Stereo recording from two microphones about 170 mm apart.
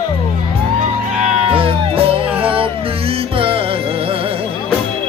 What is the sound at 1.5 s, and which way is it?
Music, 35° right (ahead or behind).